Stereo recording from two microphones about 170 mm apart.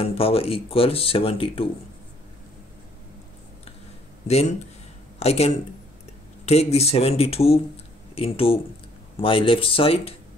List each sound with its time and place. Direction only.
0.0 s speech: 35° left (ahead or behind)
4.3 s speech: 40° left (ahead or behind)